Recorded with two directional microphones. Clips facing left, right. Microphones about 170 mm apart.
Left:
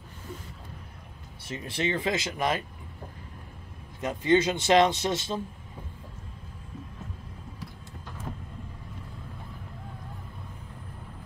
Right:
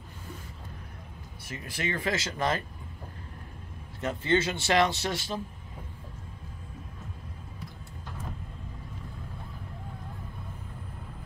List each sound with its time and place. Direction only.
1.4 s speech: 25° left (ahead or behind)
4.0 s speech: 15° left (ahead or behind)